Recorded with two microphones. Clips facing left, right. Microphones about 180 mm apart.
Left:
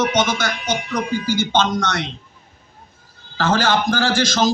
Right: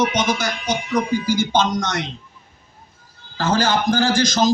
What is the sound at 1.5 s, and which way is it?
Speech, 15° right (ahead or behind).